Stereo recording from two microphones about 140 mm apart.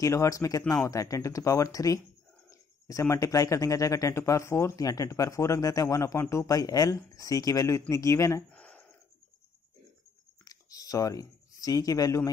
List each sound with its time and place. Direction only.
0.0 s speech: 20° left (ahead or behind)
8.5 s gasp: 10° left (ahead or behind)
10.4 s a sound: 25° left (ahead or behind)